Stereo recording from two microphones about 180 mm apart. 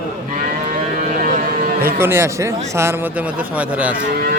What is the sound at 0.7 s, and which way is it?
Cattle, 50° right (ahead or behind).